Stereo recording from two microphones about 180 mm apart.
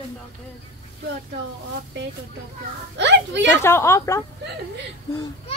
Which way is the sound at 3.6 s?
15° left (ahead or behind).